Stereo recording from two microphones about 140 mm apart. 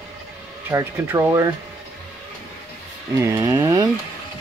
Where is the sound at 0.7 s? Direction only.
20° right (ahead or behind).